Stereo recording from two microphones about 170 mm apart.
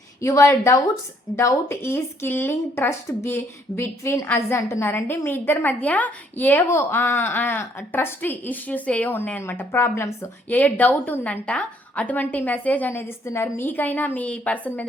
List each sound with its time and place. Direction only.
0.2 s speech: 15° left (ahead or behind)